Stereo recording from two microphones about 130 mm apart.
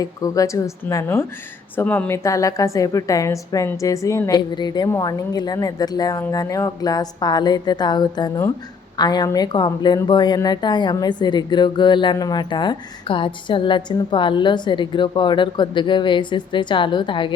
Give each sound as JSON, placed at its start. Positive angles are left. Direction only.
{"t": 0.0, "sound": "a woman's voice", "side_deg": 25}